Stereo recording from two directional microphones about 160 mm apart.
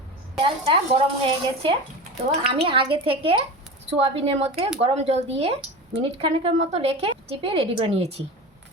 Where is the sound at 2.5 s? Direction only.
35° right (ahead or behind).